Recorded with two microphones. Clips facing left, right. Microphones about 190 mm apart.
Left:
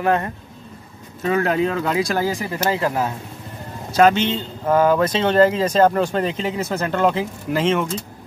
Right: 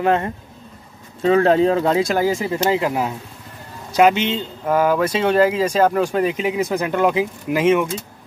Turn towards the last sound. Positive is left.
turn(degrees=-10)  # may be behind; listen again after turning